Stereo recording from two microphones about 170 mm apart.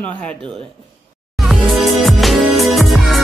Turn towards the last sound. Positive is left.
turn(degrees=0)  # may be behind; listen again after turning